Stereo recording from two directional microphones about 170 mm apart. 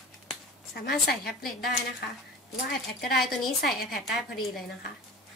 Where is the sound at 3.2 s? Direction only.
Centre (ahead or behind).